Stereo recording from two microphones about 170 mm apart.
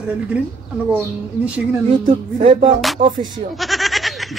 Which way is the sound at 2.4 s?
30° right (ahead or behind).